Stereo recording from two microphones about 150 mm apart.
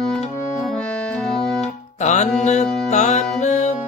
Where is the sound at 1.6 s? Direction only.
50° left (ahead or behind).